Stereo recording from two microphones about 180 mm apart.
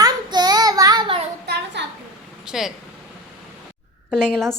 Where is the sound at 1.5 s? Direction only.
75° right (ahead or behind).